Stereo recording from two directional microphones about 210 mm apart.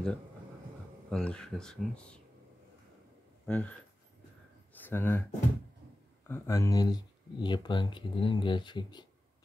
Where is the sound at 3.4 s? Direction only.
5° left (ahead or behind).